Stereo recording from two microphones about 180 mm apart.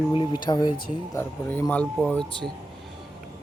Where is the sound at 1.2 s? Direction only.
10° left (ahead or behind).